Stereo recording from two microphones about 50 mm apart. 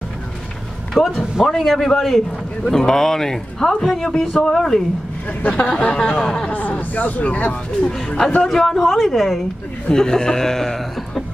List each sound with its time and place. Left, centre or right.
0.9 s a man's voice: centre
5.5 s a sound: centre
6.1 s a man's voice: centre
6.9 s speech: left
7.8 s a man's voice: centre
9.9 s a man's voice: centre